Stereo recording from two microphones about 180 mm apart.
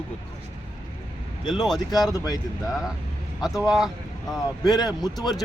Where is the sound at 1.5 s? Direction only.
Centre (ahead or behind).